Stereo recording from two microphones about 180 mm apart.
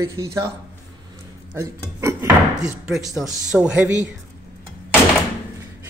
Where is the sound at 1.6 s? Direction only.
15° right (ahead or behind).